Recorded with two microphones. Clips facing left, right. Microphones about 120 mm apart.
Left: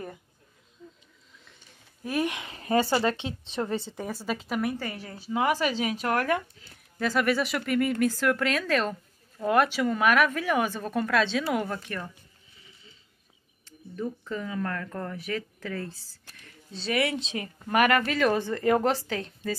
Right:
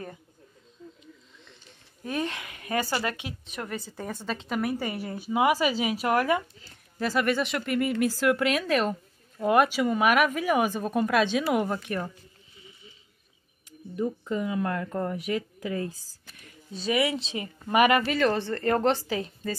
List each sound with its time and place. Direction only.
2.0 s a woman's voice: 10° left (ahead or behind)
2.4 s speech: 30° left (ahead or behind)
3.9 s a woman's voice: 10° left (ahead or behind)
4.7 s speech: 15° right (ahead or behind)
13.7 s speech: 15° right (ahead or behind)
18.3 s a woman's voice: 10° left (ahead or behind); by 19.5 s 5° right (ahead or behind)